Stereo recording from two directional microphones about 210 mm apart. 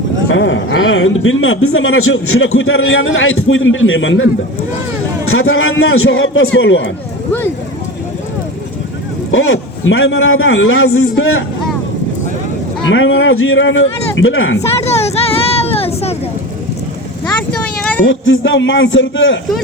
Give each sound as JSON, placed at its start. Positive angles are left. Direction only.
{"t": 0.3, "sound": "speech", "side_deg": 65}
{"t": 5.3, "sound": "speech", "side_deg": 75}
{"t": 9.3, "sound": "speech", "side_deg": 70}
{"t": 12.9, "sound": "speech", "side_deg": 65}
{"t": 14.8, "sound": "a sound", "side_deg": 30}
{"t": 17.6, "sound": "a sound", "side_deg": 5}
{"t": 18.0, "sound": "a man's voice", "side_deg": 60}